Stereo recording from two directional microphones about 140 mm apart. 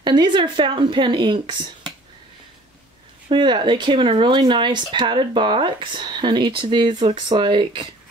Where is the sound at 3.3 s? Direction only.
35° right (ahead or behind).